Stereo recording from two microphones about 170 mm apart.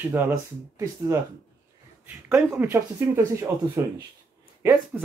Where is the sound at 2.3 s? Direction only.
15° right (ahead or behind).